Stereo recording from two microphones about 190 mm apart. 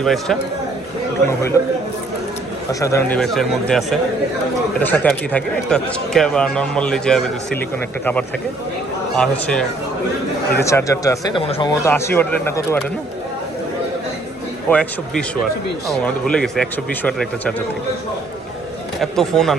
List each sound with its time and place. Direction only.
0.0 s speech: centre (ahead or behind)
2.8 s speech: 15° left (ahead or behind)
3.2 s speech: centre (ahead or behind)
9.1 s speech: 5° left (ahead or behind)
10.6 s speech: 15° left (ahead or behind)
11.4 s speech: 30° left (ahead or behind)
11.7 s speech: 15° left (ahead or behind)
14.7 s speech: 5° left (ahead or behind)
18.9 s speech: centre (ahead or behind)